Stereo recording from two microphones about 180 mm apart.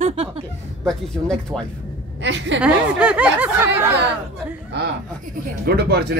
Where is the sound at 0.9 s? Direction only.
5° left (ahead or behind).